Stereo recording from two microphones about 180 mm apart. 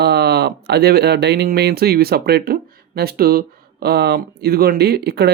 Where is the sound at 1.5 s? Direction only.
60° right (ahead or behind).